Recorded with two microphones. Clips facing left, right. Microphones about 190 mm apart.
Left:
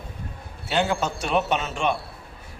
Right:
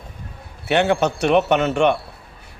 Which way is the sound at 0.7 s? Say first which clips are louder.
Right 6 dB; 65° right (ahead or behind).